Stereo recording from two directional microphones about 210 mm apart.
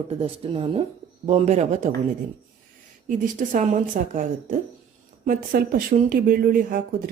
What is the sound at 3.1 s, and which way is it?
A woman's voice, 40° right (ahead or behind).